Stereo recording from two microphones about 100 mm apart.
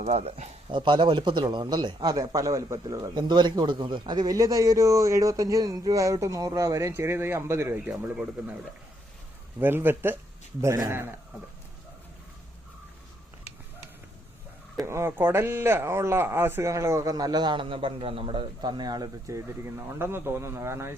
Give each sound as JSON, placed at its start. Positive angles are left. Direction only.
{"t": 0.0, "sound": "speech", "side_deg": -90}
{"t": 0.7, "sound": "speech", "side_deg": -50}
{"t": 2.1, "sound": "speech", "side_deg": -35}
{"t": 2.9, "sound": "speech", "side_deg": -45}
{"t": 9.6, "sound": "speech", "side_deg": -20}
{"t": 14.8, "sound": "speech", "side_deg": -25}
{"t": 19.6, "sound": "speech", "side_deg": -25}